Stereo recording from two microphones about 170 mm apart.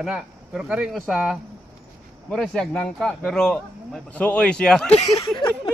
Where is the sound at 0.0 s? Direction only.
5° right (ahead or behind).